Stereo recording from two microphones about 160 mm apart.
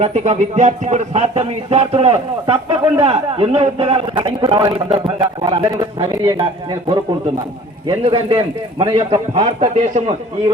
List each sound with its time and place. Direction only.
0.0 s speech: 45° right (ahead or behind)
4.2 s a man's voice: 25° right (ahead or behind)
8.8 s a man's voice: 20° right (ahead or behind)
9.0 s speech: 35° right (ahead or behind)